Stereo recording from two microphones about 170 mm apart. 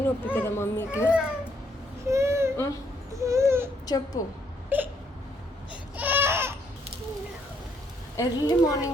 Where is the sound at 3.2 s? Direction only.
15° right (ahead or behind).